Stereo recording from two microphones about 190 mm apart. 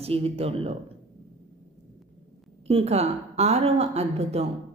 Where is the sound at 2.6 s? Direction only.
35° right (ahead or behind).